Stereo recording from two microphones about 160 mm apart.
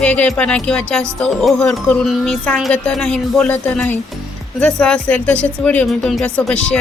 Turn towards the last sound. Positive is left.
turn(degrees=5)  # may be behind; listen again after turning